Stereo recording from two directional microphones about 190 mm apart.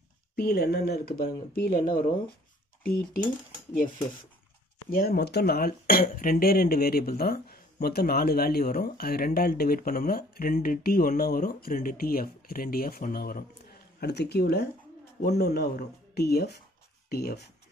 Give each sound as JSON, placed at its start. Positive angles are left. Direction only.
{"t": 0.4, "sound": "speech", "side_deg": 55}
{"t": 4.8, "sound": "speech", "side_deg": 50}